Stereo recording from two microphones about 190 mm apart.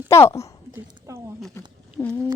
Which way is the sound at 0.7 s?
15° right (ahead or behind).